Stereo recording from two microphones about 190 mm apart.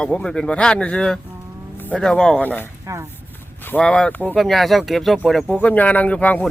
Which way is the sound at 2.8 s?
15° right (ahead or behind).